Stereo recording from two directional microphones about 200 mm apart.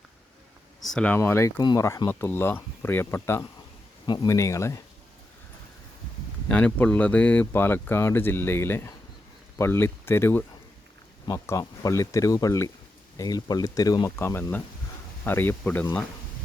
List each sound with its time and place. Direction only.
0.9 s speech: 5° left (ahead or behind)
6.5 s speech: 5° left (ahead or behind)